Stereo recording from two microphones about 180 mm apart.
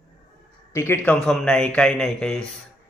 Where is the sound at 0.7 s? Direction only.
15° left (ahead or behind).